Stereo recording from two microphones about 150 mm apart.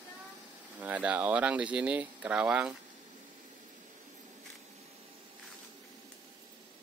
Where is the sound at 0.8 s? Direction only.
10° right (ahead or behind).